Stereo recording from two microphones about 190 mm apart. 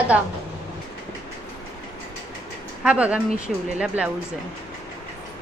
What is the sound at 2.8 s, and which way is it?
Speech, 5° right (ahead or behind).